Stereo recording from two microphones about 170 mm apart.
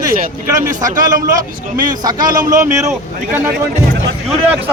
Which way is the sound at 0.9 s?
50° right (ahead or behind).